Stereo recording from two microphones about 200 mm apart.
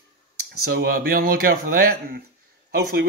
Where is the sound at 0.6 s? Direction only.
50° right (ahead or behind).